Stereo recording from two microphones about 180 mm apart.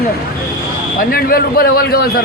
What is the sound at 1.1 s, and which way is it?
Speech, 55° left (ahead or behind).